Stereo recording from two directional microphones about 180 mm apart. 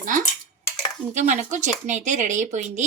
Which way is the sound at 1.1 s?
40° right (ahead or behind).